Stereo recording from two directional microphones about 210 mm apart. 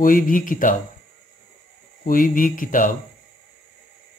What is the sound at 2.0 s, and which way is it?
Speech, 40° left (ahead or behind).